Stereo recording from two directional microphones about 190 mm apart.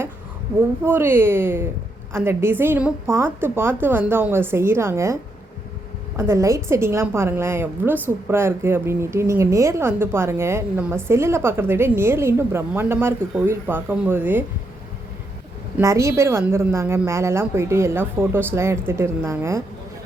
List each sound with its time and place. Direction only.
0.9 s speech: 10° right (ahead or behind)
6.1 s speech: 15° right (ahead or behind)
15.8 s speech: 15° right (ahead or behind)